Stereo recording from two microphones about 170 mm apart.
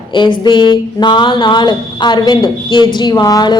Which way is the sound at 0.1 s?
25° left (ahead or behind).